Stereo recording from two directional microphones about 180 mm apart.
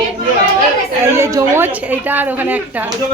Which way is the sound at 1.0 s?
15° right (ahead or behind).